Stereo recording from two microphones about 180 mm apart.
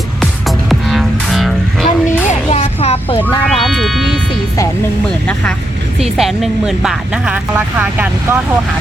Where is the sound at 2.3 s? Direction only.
35° left (ahead or behind).